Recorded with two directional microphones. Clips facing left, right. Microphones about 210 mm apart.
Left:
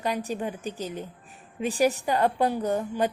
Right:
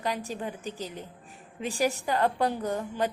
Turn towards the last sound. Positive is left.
turn(degrees=20)  # may be behind; listen again after turning